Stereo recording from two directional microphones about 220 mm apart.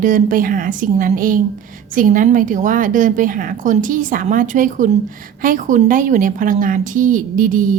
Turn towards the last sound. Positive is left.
turn(degrees=-40)  # may be behind; listen again after turning